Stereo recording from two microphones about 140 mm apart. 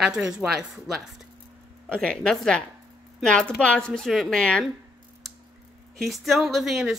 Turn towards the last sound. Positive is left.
turn(degrees=0)  # may be behind; listen again after turning